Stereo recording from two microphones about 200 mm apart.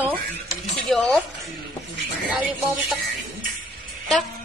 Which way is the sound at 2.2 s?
5° right (ahead or behind).